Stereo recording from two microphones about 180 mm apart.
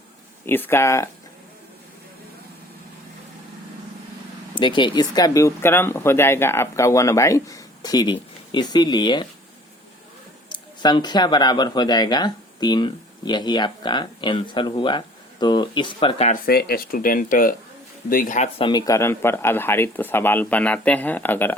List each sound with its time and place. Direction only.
0.4 s speech: 10° left (ahead or behind)
4.5 s speech: 25° left (ahead or behind)
10.5 s speech: 25° left (ahead or behind)
16.3 s speech: 60° left (ahead or behind)
18.6 s speech: 25° left (ahead or behind)